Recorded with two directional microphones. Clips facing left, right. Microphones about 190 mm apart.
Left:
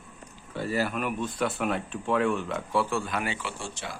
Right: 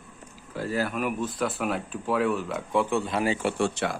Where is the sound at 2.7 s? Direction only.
20° right (ahead or behind).